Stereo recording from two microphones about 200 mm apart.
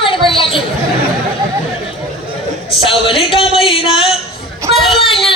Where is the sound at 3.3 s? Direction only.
30° left (ahead or behind).